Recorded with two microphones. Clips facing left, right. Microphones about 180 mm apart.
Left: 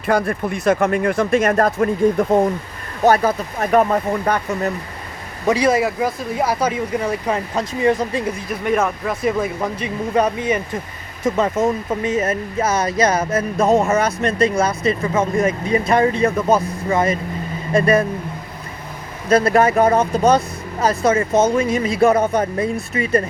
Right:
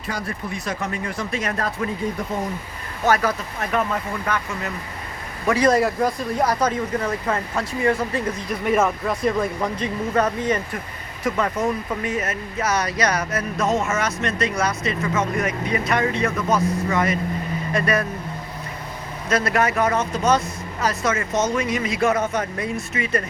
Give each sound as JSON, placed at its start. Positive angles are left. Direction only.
{"t": 0.1, "sound": "speech", "side_deg": 55}
{"t": 3.1, "sound": "speech", "side_deg": 25}
{"t": 3.6, "sound": "speech", "side_deg": 45}
{"t": 5.5, "sound": "speech", "side_deg": 10}
{"t": 8.4, "sound": "speech", "side_deg": 0}
{"t": 11.2, "sound": "speech", "side_deg": 25}
{"t": 19.3, "sound": "speech", "side_deg": 30}